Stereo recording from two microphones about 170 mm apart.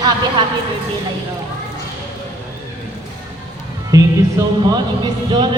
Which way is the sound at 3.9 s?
20° right (ahead or behind).